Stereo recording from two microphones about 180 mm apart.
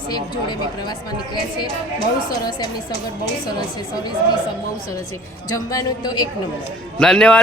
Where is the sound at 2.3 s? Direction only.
20° left (ahead or behind).